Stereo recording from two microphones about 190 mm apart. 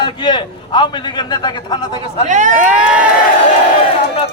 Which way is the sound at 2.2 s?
40° right (ahead or behind).